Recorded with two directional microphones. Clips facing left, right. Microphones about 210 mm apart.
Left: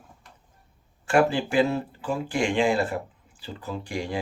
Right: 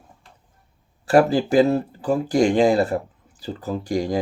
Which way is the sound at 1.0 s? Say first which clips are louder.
Right 5 dB; 35° right (ahead or behind).